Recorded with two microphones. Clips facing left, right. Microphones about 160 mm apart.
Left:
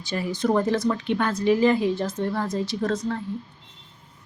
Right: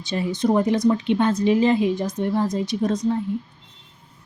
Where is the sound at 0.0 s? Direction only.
20° right (ahead or behind).